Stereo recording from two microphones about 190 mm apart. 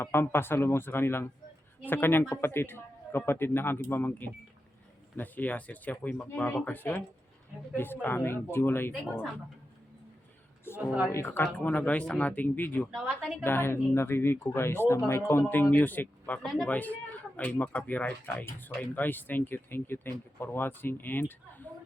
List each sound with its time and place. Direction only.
0.0 s speech: 10° left (ahead or behind)
8.0 s speech: 10° left (ahead or behind)
10.7 s speech: 10° left (ahead or behind)